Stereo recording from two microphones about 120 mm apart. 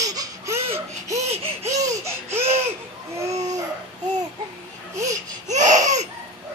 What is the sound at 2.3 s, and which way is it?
Laughter, 20° right (ahead or behind).